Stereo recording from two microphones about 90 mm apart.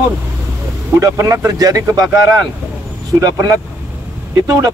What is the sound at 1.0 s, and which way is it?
Speech, 35° right (ahead or behind).